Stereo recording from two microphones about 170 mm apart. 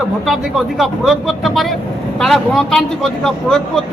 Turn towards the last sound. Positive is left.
turn(degrees=5)  # may be behind; listen again after turning